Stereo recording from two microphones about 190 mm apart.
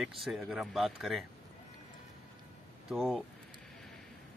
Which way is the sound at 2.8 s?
Centre (ahead or behind).